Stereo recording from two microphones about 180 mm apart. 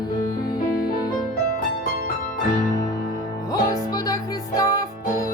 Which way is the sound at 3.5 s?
20° left (ahead or behind).